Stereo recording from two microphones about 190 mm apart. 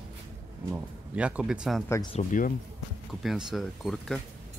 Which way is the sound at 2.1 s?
40° left (ahead or behind).